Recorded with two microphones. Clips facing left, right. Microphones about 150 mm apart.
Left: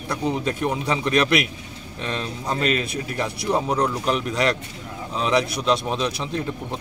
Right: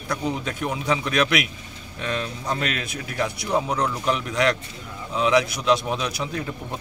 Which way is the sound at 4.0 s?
30° left (ahead or behind).